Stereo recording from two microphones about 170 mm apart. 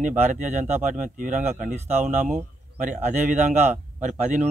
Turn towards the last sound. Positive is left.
turn(degrees=-45)  # may be behind; listen again after turning